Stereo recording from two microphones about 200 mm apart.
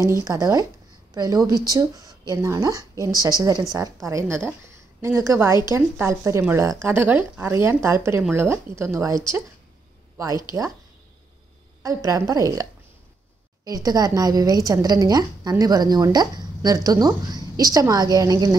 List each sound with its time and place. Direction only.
0.2 s a woman's voice: 15° right (ahead or behind)
11.8 s speech: 15° right (ahead or behind)
13.7 s speech: 20° right (ahead or behind)